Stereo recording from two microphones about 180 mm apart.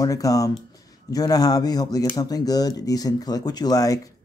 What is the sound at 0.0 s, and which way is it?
Speech, 20° left (ahead or behind).